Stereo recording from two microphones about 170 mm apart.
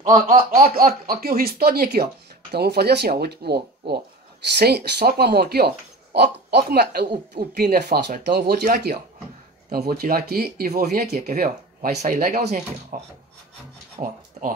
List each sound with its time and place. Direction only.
0.0 s speech: 55° right (ahead or behind)
12.0 s speech: 50° right (ahead or behind)
14.0 s speech: 35° right (ahead or behind)